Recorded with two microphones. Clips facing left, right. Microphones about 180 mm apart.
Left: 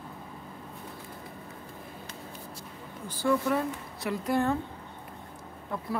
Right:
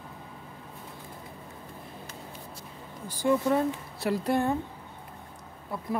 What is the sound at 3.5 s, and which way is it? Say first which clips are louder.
Speech: right 3 dB; 30° right (ahead or behind).